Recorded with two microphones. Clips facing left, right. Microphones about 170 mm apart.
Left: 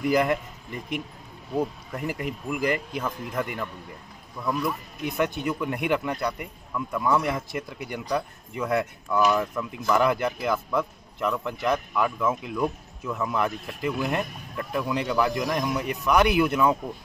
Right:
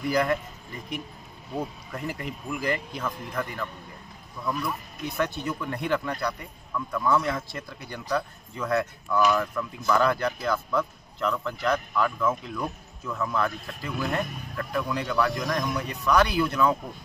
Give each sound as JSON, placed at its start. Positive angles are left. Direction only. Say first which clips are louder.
{"t": 0.0, "sound": "a man's voice", "louder": "left 2 dB", "side_deg": 20}
{"t": 2.0, "sound": "speech", "louder": "left 3 dB", "side_deg": 15}
{"t": 5.0, "sound": "a man's voice", "louder": "left 3 dB", "side_deg": 20}